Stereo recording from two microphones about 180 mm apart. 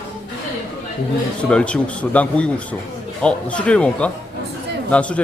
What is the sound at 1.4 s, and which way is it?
Speech, 5° left (ahead or behind).